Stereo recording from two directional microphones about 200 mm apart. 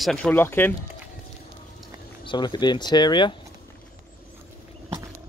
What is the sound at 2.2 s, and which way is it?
Speech, 20° left (ahead or behind).